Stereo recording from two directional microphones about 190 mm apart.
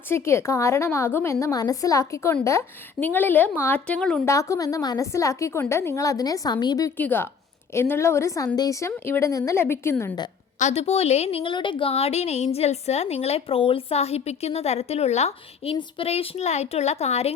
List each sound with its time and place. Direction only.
0.1 s a woman's voice: 15° left (ahead or behind)
4.3 s a woman's voice: 15° left (ahead or behind)
10.6 s a woman's voice: 35° left (ahead or behind)